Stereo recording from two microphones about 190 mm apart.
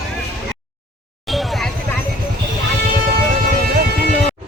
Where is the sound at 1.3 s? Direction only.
Centre (ahead or behind).